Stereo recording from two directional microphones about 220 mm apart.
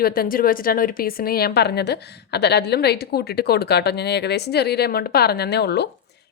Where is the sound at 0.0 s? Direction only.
45° left (ahead or behind).